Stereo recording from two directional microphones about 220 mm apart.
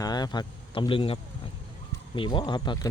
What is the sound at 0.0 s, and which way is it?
Speech, 20° left (ahead or behind).